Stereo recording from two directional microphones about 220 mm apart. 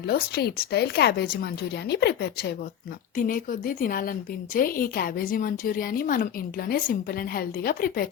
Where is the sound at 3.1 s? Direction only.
40° left (ahead or behind).